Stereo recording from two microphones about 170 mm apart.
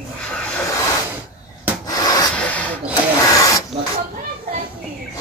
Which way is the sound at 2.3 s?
10° left (ahead or behind).